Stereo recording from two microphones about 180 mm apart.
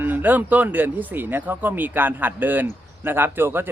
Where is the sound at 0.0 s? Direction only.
10° right (ahead or behind).